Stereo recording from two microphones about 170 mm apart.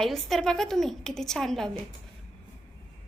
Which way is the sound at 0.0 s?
Centre (ahead or behind).